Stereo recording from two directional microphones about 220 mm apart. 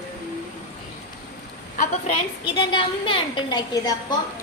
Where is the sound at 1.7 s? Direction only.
35° left (ahead or behind).